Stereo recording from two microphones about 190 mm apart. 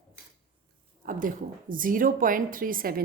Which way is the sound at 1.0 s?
45° right (ahead or behind).